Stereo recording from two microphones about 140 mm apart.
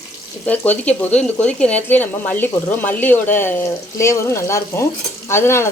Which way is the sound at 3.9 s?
20° left (ahead or behind).